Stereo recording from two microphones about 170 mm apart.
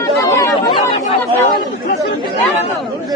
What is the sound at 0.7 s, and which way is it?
Speech, 30° left (ahead or behind).